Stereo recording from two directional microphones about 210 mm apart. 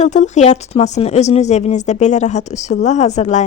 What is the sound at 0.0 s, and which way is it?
Speech, 35° left (ahead or behind).